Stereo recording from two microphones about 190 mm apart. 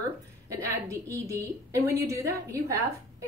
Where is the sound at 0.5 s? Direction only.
15° right (ahead or behind).